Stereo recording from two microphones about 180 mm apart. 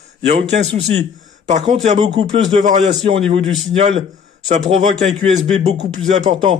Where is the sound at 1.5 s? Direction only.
40° right (ahead or behind).